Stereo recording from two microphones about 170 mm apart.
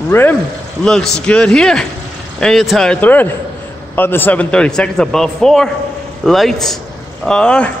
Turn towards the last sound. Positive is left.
turn(degrees=5)  # may be behind; listen again after turning